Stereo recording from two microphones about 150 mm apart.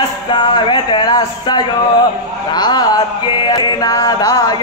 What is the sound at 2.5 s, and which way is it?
Chant, 30° left (ahead or behind).